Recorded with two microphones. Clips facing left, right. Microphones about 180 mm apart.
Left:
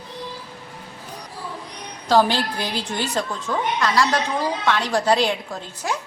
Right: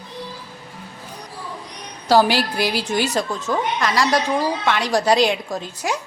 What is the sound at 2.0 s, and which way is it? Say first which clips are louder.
A woman's voice: right 2 dB; 10° right (ahead or behind).